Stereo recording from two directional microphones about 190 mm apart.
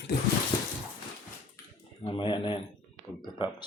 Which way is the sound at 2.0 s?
25° left (ahead or behind).